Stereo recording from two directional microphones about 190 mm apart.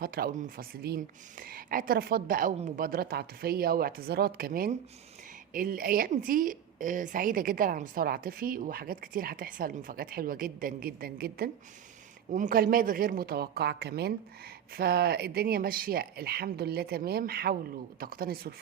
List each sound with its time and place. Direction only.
0.0 s a woman's voice: 50° right (ahead or behind)
12.3 s a woman's voice: 40° right (ahead or behind)